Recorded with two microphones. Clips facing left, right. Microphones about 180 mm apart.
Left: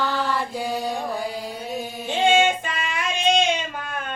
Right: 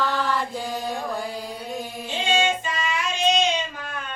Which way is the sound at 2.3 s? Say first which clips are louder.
Left 3 dB; 55° left (ahead or behind).